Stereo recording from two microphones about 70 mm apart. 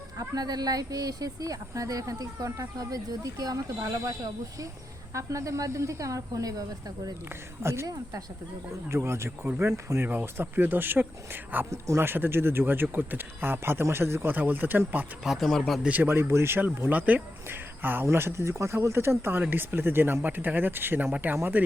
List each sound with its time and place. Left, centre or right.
0.2 s speech: right
7.3 s speech: right
8.9 s speech: right
10.1 s speech: right
11.7 s speech: right
12.0 s speech: right
15.2 s speech: centre
15.9 s speech: right